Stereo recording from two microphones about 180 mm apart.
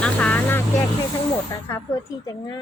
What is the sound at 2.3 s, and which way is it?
Speech, 25° left (ahead or behind).